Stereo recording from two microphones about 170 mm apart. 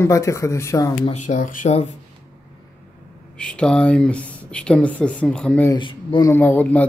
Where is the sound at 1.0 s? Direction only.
45° left (ahead or behind).